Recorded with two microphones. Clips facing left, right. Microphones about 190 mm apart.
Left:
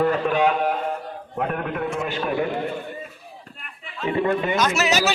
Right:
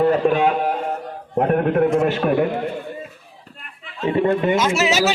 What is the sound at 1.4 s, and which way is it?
A man's voice, 50° right (ahead or behind).